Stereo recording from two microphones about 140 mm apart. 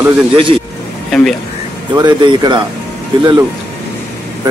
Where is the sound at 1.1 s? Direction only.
5° left (ahead or behind).